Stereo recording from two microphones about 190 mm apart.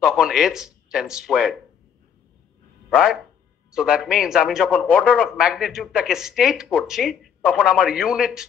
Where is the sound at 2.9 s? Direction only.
5° right (ahead or behind).